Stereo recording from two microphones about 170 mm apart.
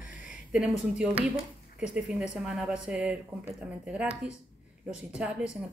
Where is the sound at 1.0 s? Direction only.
5° right (ahead or behind).